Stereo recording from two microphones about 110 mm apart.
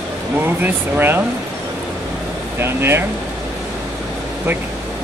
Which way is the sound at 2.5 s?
20° right (ahead or behind).